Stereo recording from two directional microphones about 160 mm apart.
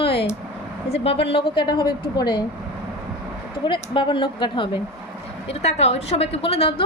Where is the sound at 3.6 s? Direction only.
30° left (ahead or behind).